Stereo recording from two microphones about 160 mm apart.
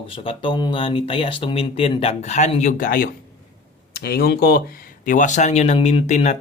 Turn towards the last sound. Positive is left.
turn(degrees=45)  # may be behind; listen again after turning